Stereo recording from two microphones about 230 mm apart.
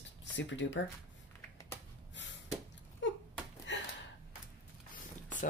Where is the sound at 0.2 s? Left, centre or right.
Left.